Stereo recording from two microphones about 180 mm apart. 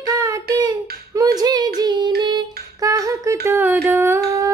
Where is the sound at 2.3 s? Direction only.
20° right (ahead or behind).